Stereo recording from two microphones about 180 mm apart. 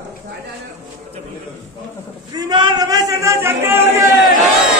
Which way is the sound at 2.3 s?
25° right (ahead or behind).